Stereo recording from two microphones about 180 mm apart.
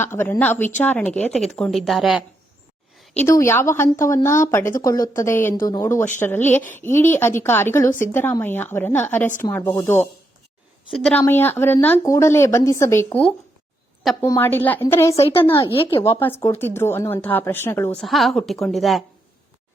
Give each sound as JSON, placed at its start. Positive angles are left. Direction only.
{"t": 0.0, "sound": "speech", "side_deg": 10}
{"t": 3.2, "sound": "speech", "side_deg": 15}
{"t": 15.5, "sound": "a woman's voice", "side_deg": 30}
{"t": 16.0, "sound": "speech", "side_deg": 10}
{"t": 18.0, "sound": "speech", "side_deg": 0}